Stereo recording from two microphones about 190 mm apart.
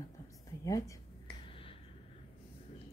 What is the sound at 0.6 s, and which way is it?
Dog, 15° left (ahead or behind).